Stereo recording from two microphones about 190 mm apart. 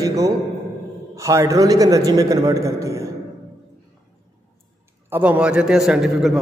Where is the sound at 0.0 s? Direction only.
20° right (ahead or behind).